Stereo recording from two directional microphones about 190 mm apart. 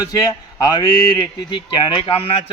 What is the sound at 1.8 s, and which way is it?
Speech, 25° left (ahead or behind).